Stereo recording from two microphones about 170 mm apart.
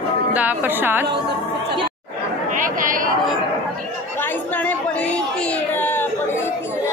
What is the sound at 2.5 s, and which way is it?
Chatter, 50° right (ahead or behind).